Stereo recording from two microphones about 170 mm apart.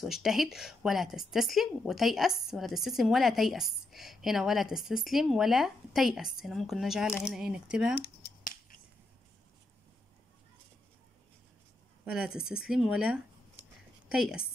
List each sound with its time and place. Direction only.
0.0 s a woman's voice: centre (ahead or behind)
7.9 s finger snapping: 60° left (ahead or behind)
12.0 s a woman's voice: 5° right (ahead or behind)